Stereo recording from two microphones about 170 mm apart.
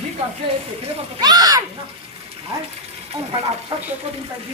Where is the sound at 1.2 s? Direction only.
25° right (ahead or behind).